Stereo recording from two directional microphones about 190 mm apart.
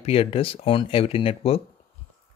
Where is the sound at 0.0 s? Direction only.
30° left (ahead or behind).